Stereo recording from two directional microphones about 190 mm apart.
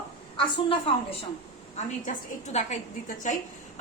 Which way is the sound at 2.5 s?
35° left (ahead or behind).